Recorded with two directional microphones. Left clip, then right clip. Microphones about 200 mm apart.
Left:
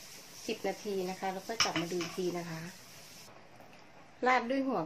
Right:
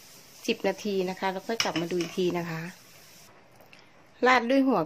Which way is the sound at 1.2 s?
55° right (ahead or behind).